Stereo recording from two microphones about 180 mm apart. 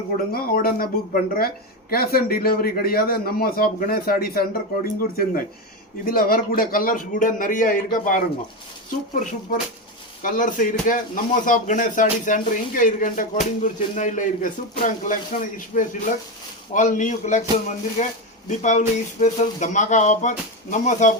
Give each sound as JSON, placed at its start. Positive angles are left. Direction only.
{"t": 0.3, "sound": "a man's voice", "side_deg": 55}